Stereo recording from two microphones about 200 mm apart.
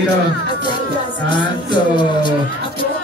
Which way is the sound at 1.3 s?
20° left (ahead or behind).